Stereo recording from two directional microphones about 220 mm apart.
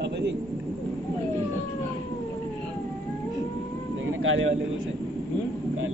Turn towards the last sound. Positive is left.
turn(degrees=-65)  # may be behind; listen again after turning